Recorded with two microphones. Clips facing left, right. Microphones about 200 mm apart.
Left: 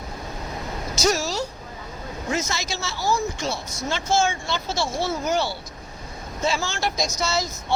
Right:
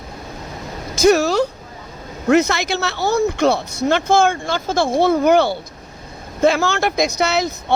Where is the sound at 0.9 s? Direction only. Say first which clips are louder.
Right 10 dB; 60° right (ahead or behind).